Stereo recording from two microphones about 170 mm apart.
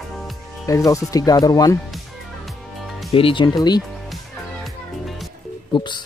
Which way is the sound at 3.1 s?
30° left (ahead or behind).